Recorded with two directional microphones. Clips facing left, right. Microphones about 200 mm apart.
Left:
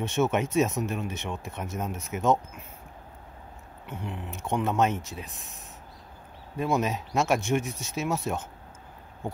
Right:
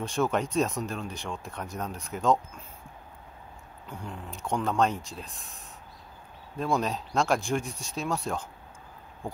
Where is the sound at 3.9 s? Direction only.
20° left (ahead or behind).